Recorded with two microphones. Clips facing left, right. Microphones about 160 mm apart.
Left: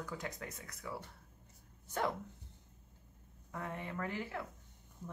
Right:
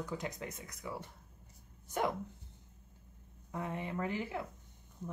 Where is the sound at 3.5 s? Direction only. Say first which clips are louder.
Right 3 dB; 20° right (ahead or behind).